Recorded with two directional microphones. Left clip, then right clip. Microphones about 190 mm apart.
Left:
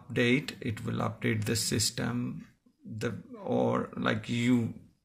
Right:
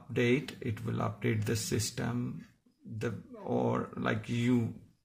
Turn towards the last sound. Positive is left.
turn(degrees=10)  # may be behind; listen again after turning